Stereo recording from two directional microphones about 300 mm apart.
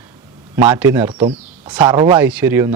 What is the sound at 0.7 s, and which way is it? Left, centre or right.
Speech, centre.